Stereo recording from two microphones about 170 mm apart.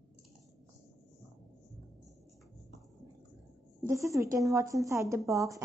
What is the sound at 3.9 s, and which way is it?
A woman's voice, 20° right (ahead or behind).